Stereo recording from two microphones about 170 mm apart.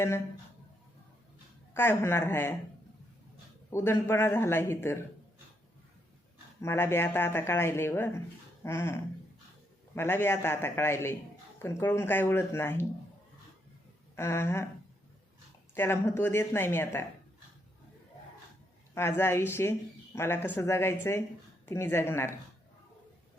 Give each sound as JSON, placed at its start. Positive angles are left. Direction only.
{"t": 1.7, "sound": "speech", "side_deg": 15}
{"t": 3.7, "sound": "speech", "side_deg": 15}
{"t": 6.6, "sound": "speech", "side_deg": 15}
{"t": 14.2, "sound": "speech", "side_deg": 15}
{"t": 15.7, "sound": "speech", "side_deg": 15}
{"t": 18.9, "sound": "speech", "side_deg": 15}